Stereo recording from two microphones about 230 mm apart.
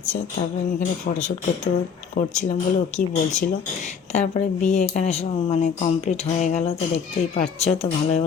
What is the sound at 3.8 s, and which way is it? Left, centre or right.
Speech, left.